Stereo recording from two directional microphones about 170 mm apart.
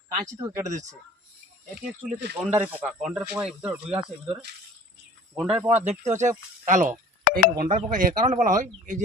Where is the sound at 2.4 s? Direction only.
5° right (ahead or behind).